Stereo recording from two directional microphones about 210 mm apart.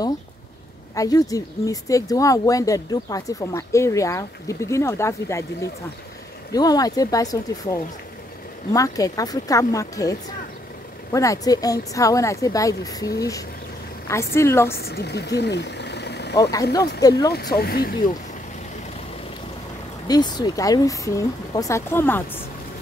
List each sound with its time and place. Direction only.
0.9 s speech: 15° left (ahead or behind)
14.8 s speech: 50° left (ahead or behind)
16.3 s speech: 15° left (ahead or behind)
17.3 s speech: 50° left (ahead or behind)
20.1 s speech: 20° left (ahead or behind)